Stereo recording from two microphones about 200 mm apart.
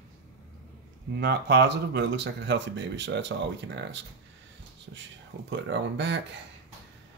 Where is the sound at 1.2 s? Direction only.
55° right (ahead or behind).